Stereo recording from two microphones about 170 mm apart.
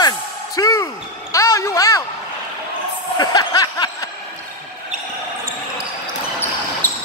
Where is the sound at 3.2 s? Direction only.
20° left (ahead or behind).